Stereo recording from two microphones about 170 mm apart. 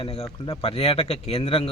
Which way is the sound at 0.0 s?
30° left (ahead or behind).